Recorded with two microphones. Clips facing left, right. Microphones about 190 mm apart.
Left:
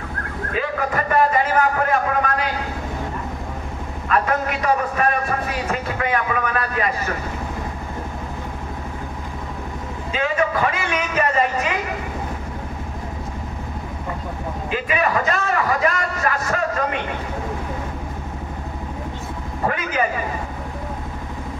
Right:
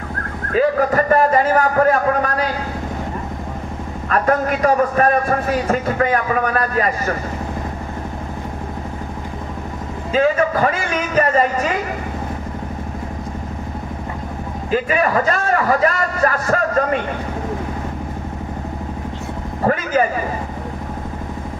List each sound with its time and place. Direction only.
0.6 s a man's voice: 40° right (ahead or behind)
4.1 s a man's voice: 40° right (ahead or behind)
10.1 s a man's voice: 40° right (ahead or behind)
14.7 s a man's voice: 40° right (ahead or behind)
19.6 s vehicle: 40° right (ahead or behind)